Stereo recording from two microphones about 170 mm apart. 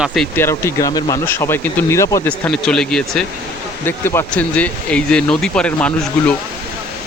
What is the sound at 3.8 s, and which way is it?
Speech, 15° left (ahead or behind).